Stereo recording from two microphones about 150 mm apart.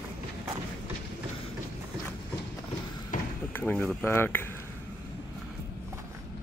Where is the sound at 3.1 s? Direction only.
60° left (ahead or behind).